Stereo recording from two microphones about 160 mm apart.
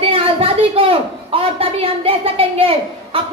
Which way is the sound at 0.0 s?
35° right (ahead or behind).